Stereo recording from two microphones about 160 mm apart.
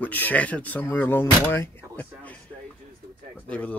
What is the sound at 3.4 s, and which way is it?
Speech, 10° left (ahead or behind).